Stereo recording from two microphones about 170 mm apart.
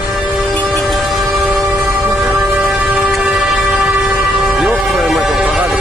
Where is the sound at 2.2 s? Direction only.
Centre (ahead or behind).